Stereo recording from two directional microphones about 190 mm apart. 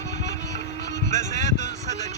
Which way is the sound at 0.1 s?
40° right (ahead or behind).